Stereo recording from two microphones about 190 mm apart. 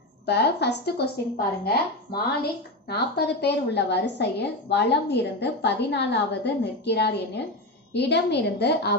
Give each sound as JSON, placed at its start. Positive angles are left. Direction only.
{"t": 0.3, "sound": "speech", "side_deg": 60}